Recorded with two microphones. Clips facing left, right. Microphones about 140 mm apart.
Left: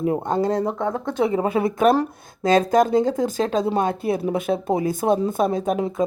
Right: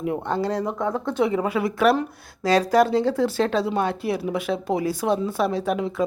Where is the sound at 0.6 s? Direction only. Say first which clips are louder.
Left 1 dB; 35° left (ahead or behind).